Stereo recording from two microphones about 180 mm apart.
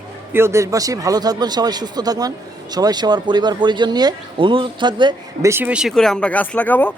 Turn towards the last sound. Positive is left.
turn(degrees=10)  # may be behind; listen again after turning